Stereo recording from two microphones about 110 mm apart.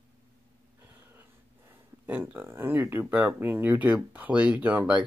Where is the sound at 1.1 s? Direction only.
15° right (ahead or behind).